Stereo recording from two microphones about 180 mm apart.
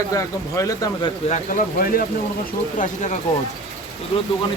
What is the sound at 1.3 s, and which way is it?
Speech, 50° left (ahead or behind).